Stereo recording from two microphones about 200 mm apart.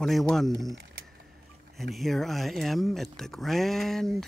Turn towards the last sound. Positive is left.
turn(degrees=0)  # may be behind; listen again after turning